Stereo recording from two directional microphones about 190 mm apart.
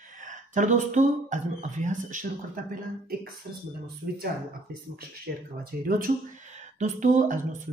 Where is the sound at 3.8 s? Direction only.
55° right (ahead or behind).